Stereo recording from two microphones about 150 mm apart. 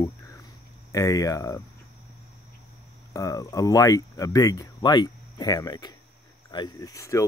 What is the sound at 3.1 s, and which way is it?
Speech, 20° left (ahead or behind).